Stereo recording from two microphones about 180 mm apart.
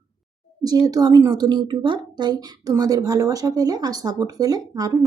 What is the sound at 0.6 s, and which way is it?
A woman's voice, 20° right (ahead or behind).